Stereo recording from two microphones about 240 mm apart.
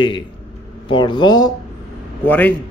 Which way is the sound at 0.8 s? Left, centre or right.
Left.